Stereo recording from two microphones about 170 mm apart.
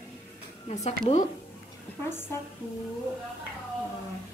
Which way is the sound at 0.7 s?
40° left (ahead or behind).